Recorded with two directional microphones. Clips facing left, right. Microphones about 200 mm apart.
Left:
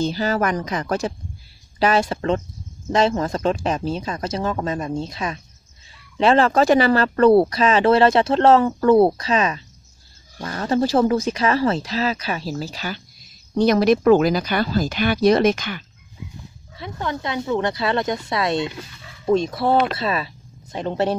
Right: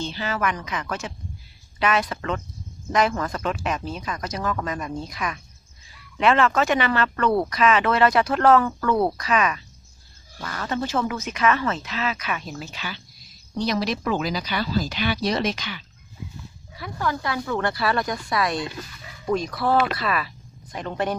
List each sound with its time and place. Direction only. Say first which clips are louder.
0.0 s speech: left 6 dB; 40° left (ahead or behind)
13.6 s speech: left 9 dB; 55° left (ahead or behind)
16.7 s speech: even; 25° left (ahead or behind)